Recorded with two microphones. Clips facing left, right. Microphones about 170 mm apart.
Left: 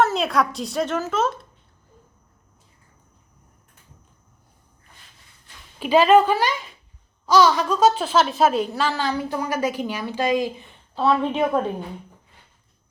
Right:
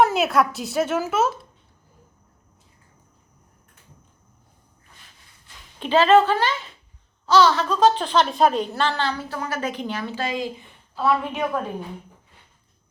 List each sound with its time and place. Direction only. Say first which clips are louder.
0.0 s a woman's voice: right 2 dB; 5° right (ahead or behind)
5.8 s a woman's voice: left 1 dB; 10° left (ahead or behind)
10.9 s a woman's voice: left 2 dB; 30° left (ahead or behind)